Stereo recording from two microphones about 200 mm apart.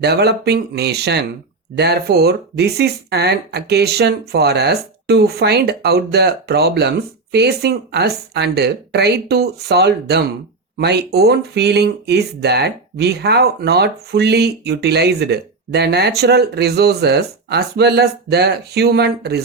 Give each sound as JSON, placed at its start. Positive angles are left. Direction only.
{"t": 0.0, "sound": "speech", "side_deg": -55}